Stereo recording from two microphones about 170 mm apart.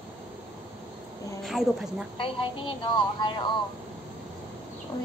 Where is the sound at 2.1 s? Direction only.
30° left (ahead or behind).